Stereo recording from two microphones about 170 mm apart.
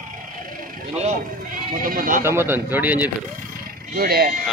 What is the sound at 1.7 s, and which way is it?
Speech, 55° right (ahead or behind).